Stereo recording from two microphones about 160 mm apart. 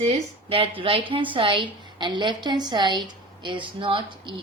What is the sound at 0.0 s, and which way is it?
A woman's voice, 35° right (ahead or behind).